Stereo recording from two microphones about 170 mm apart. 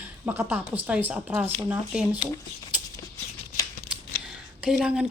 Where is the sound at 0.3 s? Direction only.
10° right (ahead or behind).